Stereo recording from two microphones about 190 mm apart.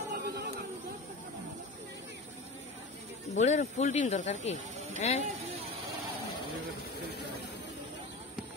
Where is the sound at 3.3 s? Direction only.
40° left (ahead or behind).